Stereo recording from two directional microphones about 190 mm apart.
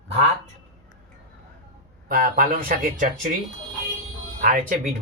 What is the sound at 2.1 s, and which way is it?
Speech, 50° right (ahead or behind).